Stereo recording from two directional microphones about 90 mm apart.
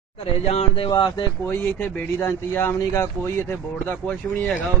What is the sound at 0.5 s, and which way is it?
Speech, 90° left.